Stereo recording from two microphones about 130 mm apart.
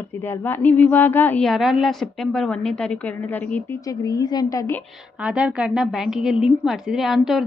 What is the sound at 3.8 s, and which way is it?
Speech, 30° left (ahead or behind).